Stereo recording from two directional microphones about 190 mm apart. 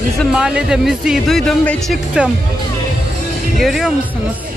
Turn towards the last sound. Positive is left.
turn(degrees=0)  # may be behind; listen again after turning